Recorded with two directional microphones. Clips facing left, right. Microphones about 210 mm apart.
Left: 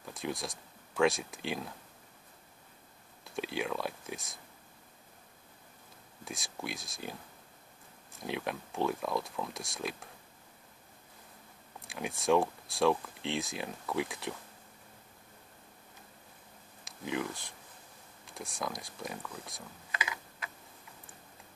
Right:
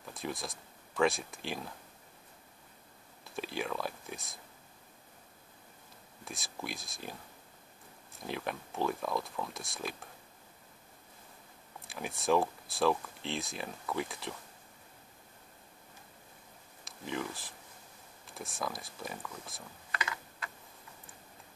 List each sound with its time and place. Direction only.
0.0 s speech: centre (ahead or behind)
3.3 s speech: centre (ahead or behind)
6.2 s speech: centre (ahead or behind)
11.8 s speech: centre (ahead or behind)
16.8 s speech: centre (ahead or behind)
20.0 s typing: 15° left (ahead or behind)